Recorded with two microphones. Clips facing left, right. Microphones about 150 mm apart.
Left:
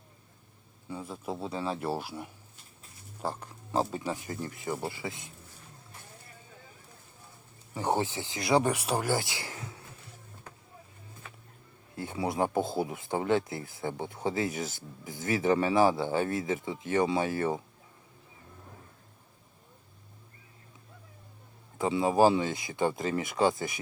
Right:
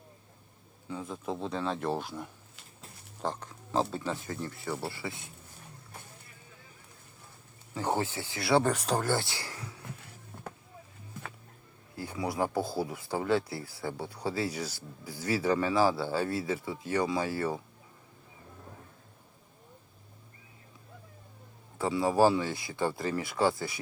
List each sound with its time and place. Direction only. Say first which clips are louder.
0.9 s speech: right 1 dB; 5° left (ahead or behind)
3.2 s a sound: even; 10° left (ahead or behind)
3.9 s speech: even; 10° left (ahead or behind)
7.7 s speech: left 2 dB; 15° left (ahead or behind)
11.9 s speech: left 2 dB; 25° left (ahead or behind)
21.8 s speech: left 1 dB; 20° left (ahead or behind)